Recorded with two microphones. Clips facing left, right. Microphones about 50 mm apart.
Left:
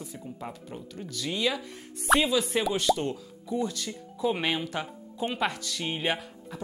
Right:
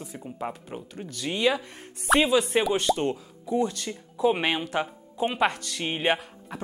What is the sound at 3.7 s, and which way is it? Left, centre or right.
Speech, right.